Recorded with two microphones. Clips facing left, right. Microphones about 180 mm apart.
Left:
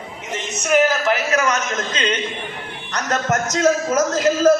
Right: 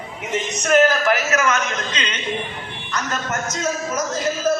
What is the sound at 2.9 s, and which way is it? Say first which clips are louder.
Speech: left 5 dB; 75° left (ahead or behind).